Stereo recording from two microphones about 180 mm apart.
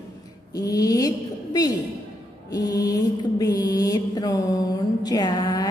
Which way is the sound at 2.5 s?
20° left (ahead or behind).